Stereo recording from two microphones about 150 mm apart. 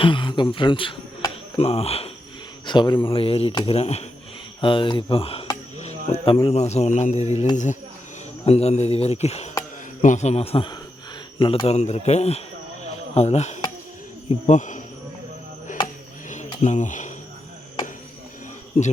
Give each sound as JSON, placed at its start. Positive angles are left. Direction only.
{"t": 0.0, "sound": "speech", "side_deg": 35}
{"t": 2.6, "sound": "speech", "side_deg": 30}
{"t": 3.8, "sound": "speech", "side_deg": 45}
{"t": 4.6, "sound": "speech", "side_deg": 35}
{"t": 8.4, "sound": "speech", "side_deg": 45}
{"t": 16.3, "sound": "a sound", "side_deg": 50}